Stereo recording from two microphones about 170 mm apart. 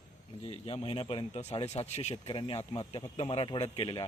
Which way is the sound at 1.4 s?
40° left (ahead or behind).